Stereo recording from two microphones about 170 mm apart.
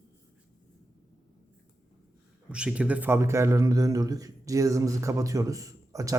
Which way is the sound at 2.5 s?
5° right (ahead or behind).